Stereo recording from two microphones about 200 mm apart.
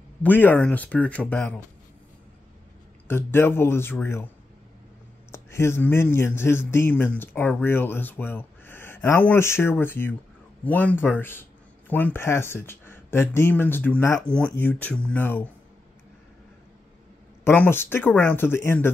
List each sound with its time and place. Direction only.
0.2 s speech: 10° left (ahead or behind)
3.1 s speech: 10° left (ahead or behind)
5.3 s speech: 15° left (ahead or behind)
17.5 s speech: 10° left (ahead or behind)